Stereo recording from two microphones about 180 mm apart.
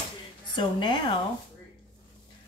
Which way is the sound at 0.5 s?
25° left (ahead or behind).